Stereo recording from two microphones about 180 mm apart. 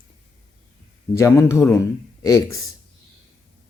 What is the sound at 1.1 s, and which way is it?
Speech, 15° left (ahead or behind).